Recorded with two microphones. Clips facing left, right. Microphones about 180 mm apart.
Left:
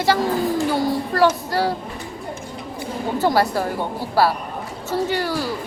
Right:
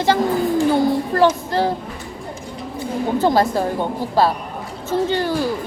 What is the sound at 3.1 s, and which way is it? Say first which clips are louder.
Speech: right 2 dB; 20° right (ahead or behind).